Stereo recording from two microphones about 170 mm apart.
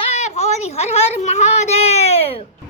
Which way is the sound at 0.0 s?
40° left (ahead or behind).